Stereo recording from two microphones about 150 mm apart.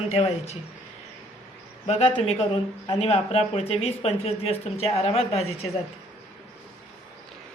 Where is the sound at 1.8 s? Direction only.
45° left (ahead or behind).